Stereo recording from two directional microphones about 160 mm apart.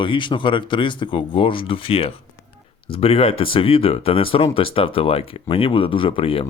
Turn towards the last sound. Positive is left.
turn(degrees=35)  # may be behind; listen again after turning